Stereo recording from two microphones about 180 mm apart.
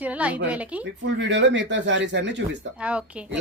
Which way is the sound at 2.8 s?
5° right (ahead or behind).